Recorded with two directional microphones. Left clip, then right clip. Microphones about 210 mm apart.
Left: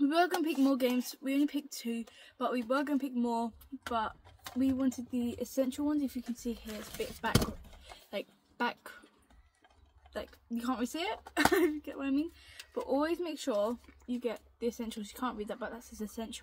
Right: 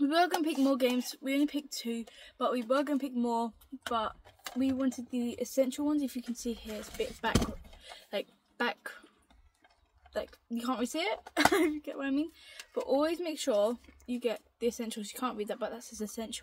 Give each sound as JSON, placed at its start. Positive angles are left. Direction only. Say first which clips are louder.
{"t": 0.0, "sound": "speech", "louder": "right 1 dB", "side_deg": -15}
{"t": 4.6, "sound": "speech", "louder": "even", "side_deg": -10}
{"t": 8.1, "sound": "speech", "louder": "right 3 dB", "side_deg": -15}
{"t": 10.1, "sound": "speech", "louder": "right 4 dB", "side_deg": -10}